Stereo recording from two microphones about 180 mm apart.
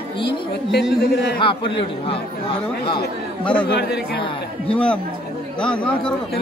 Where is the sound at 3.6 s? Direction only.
65° left (ahead or behind).